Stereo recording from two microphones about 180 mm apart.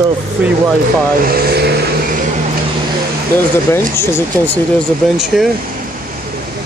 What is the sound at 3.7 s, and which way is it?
Speech, 15° left (ahead or behind).